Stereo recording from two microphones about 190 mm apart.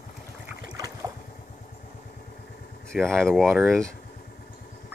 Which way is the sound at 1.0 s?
20° right (ahead or behind).